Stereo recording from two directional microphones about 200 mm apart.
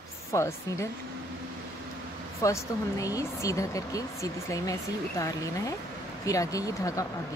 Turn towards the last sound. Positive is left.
turn(degrees=15)  # may be behind; listen again after turning